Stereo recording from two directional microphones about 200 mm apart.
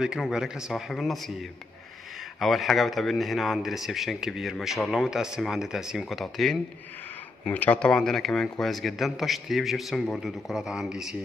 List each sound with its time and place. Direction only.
0.0 s speech: 5° right (ahead or behind)
2.4 s speech: centre (ahead or behind)